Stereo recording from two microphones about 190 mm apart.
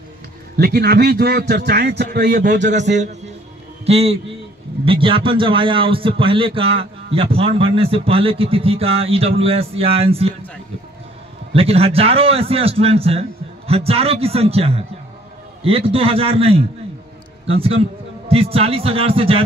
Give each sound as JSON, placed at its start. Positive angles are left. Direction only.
{"t": 0.6, "sound": "a man's voice", "side_deg": -55}
{"t": 11.5, "sound": "a man's voice", "side_deg": -30}